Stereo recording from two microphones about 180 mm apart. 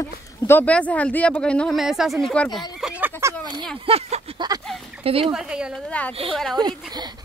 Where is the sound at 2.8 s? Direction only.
5° right (ahead or behind).